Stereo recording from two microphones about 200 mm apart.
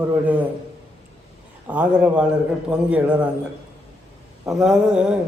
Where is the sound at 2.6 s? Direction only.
5° right (ahead or behind).